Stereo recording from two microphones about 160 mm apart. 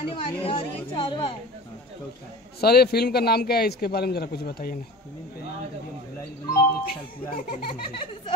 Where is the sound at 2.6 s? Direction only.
80° left.